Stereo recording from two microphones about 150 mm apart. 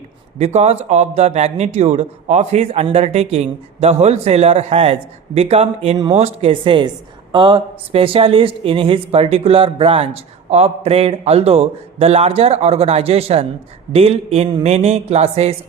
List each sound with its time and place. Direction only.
0.3 s speech: 50° right (ahead or behind)